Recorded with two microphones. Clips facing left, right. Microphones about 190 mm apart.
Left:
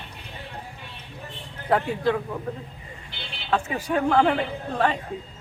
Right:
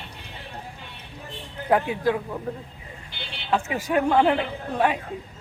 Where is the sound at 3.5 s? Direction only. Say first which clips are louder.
Right 1 dB; 10° right (ahead or behind).